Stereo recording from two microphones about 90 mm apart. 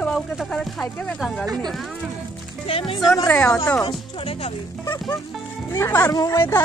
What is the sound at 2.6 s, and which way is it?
Speech, 85° left.